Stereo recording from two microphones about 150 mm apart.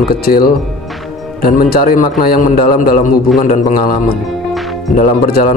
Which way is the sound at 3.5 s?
80° left.